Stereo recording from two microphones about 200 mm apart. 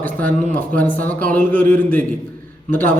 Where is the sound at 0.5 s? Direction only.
10° left (ahead or behind).